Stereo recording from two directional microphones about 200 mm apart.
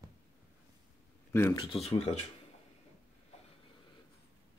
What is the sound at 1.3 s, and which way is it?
Speech, 15° left (ahead or behind).